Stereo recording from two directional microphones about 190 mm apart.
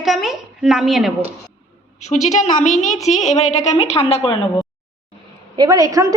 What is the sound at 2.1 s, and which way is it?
A woman's voice, 40° left (ahead or behind).